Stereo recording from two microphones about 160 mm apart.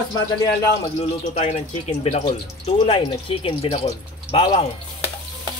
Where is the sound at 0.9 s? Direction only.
45° left (ahead or behind).